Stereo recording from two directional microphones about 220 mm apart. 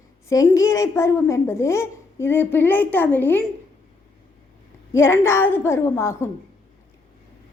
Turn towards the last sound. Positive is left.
turn(degrees=10)  # may be behind; listen again after turning